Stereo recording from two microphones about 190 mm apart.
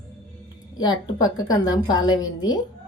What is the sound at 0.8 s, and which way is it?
A woman's voice, 20° left (ahead or behind).